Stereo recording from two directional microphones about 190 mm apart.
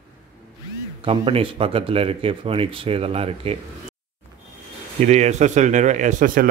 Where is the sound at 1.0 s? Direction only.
30° right (ahead or behind).